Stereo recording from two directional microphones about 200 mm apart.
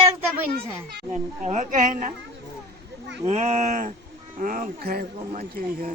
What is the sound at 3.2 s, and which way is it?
Speech, 35° right (ahead or behind).